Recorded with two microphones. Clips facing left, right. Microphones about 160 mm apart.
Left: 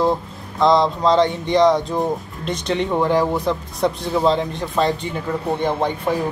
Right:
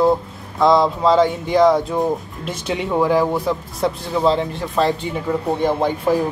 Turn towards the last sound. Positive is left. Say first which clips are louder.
# right 3 dB
turn(degrees=-5)  # may be behind; listen again after turning